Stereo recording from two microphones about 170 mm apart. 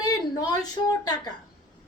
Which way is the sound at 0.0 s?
20° left (ahead or behind).